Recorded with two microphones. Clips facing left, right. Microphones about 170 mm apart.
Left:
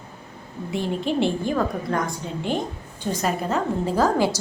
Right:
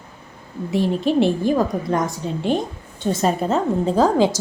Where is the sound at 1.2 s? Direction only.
20° right (ahead or behind).